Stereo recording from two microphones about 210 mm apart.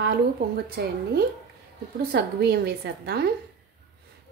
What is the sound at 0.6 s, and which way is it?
A woman's voice, 50° right (ahead or behind).